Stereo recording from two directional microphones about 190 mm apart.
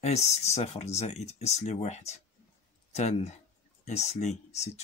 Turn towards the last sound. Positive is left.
turn(degrees=35)  # may be behind; listen again after turning